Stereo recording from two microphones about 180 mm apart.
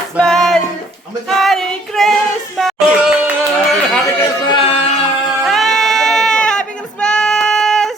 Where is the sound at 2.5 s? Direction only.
Centre (ahead or behind).